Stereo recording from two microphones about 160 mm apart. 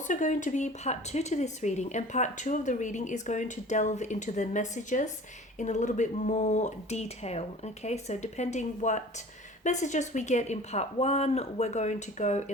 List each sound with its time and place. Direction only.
0.1 s speech: 50° left (ahead or behind)